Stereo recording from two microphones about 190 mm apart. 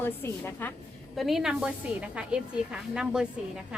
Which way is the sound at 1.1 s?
Centre (ahead or behind).